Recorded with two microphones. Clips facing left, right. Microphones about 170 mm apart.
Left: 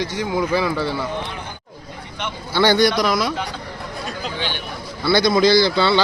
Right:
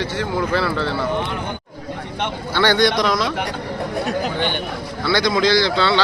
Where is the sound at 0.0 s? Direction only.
15° left (ahead or behind).